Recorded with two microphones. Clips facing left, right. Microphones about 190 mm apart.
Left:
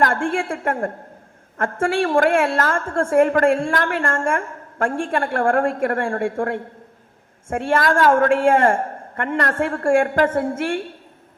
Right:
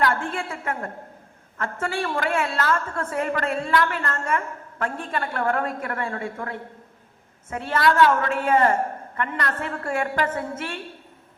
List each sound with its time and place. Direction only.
0.0 s a woman's voice: 50° left (ahead or behind)
7.7 s a woman's voice: 45° left (ahead or behind)